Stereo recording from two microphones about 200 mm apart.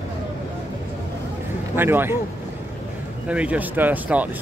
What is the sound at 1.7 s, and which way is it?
Speech, 10° right (ahead or behind).